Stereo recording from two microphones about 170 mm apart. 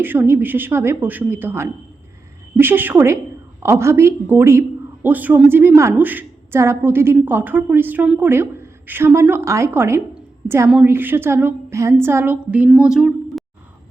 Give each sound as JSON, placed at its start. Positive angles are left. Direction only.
{"t": 0.0, "sound": "a woman's voice", "side_deg": -10}